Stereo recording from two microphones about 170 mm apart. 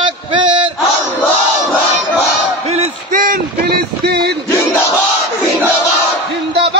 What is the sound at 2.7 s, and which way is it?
Speech, 50° right (ahead or behind).